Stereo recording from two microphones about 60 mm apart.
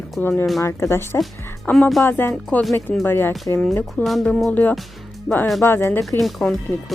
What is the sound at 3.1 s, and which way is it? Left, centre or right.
Speech, left.